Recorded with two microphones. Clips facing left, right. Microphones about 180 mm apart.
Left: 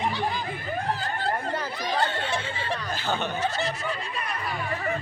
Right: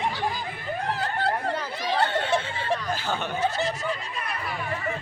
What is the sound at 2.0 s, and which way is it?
Speech, 60° right (ahead or behind).